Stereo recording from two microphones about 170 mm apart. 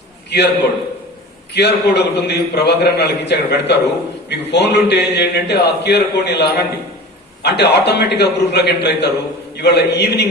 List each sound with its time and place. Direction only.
0.3 s a man's voice: 90° left
1.5 s a man's voice: 85° left